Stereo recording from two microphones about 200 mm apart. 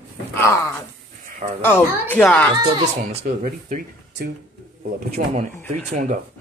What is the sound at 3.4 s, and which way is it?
Speech, 40° right (ahead or behind).